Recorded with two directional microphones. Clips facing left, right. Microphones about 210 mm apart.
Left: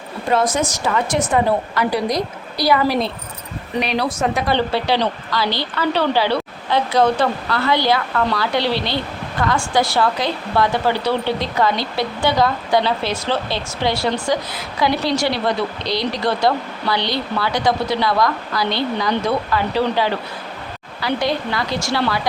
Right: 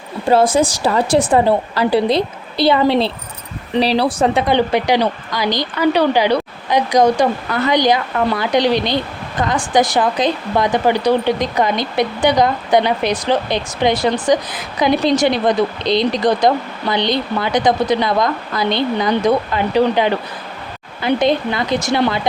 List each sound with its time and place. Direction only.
0.3 s a woman's voice: 30° right (ahead or behind)
4.4 s a woman's voice: 15° right (ahead or behind)